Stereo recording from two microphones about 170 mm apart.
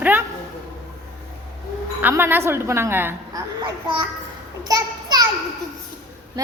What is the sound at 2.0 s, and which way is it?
A woman's voice, 10° right (ahead or behind).